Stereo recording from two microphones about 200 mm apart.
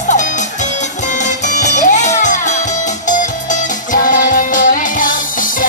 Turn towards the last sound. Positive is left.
turn(degrees=40)  # may be behind; listen again after turning